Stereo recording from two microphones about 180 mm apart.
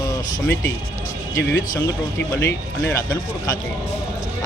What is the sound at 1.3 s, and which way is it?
Speech, 15° left (ahead or behind).